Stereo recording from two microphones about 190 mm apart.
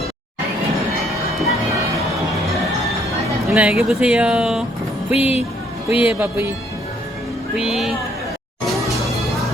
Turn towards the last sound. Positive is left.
turn(degrees=0)  # may be behind; listen again after turning